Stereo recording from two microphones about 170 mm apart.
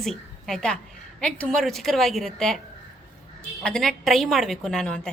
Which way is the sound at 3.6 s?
5° left (ahead or behind).